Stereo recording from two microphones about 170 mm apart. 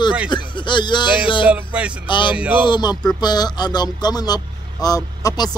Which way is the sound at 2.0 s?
30° left (ahead or behind).